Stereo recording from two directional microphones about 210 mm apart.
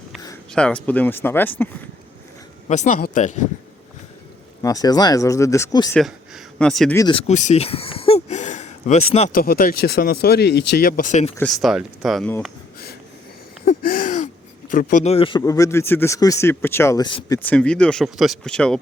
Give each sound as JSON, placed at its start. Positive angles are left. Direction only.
{"t": 0.5, "sound": "speech", "side_deg": 5}
{"t": 2.6, "sound": "speech", "side_deg": 35}
{"t": 4.6, "sound": "speech", "side_deg": 15}
{"t": 5.9, "sound": "speech", "side_deg": 0}
{"t": 6.9, "sound": "speech", "side_deg": 20}
{"t": 9.4, "sound": "speech", "side_deg": 45}
{"t": 11.3, "sound": "speech", "side_deg": 0}
{"t": 13.7, "sound": "a sound", "side_deg": 45}
{"t": 14.7, "sound": "speech", "side_deg": 40}